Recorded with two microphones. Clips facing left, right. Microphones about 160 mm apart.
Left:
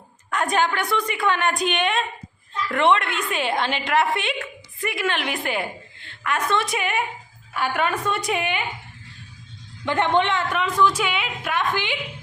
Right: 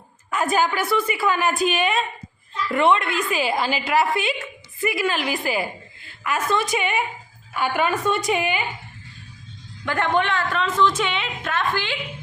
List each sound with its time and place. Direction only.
0.3 s a woman's voice: 5° right (ahead or behind)
9.8 s a woman's voice: 20° left (ahead or behind)